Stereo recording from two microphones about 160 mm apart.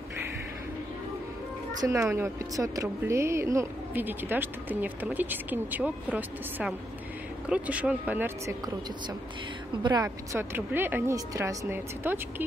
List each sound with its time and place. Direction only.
1.8 s speech: 20° right (ahead or behind)
9.8 s speech: 20° right (ahead or behind)